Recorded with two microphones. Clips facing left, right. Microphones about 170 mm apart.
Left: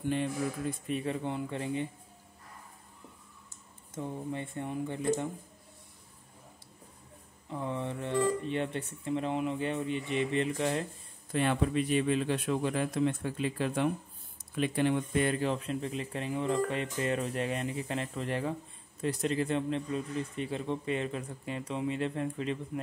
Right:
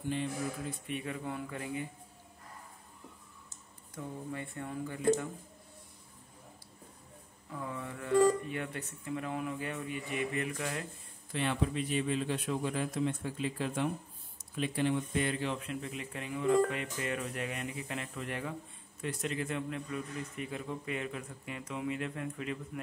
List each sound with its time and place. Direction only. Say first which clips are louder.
0.1 s a man's voice: left 3 dB; 55° left (ahead or behind)
0.8 s speech: left 5 dB; 35° left (ahead or behind)
3.9 s speech: left 4 dB; 25° left (ahead or behind)
7.4 s speech: left 5 dB; 25° left (ahead or behind)
11.3 s a man's voice: left 4 dB; 55° left (ahead or behind); by 22.6 s 30° left (ahead or behind)